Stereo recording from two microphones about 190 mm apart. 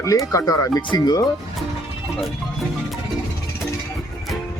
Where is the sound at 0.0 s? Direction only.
15° left (ahead or behind).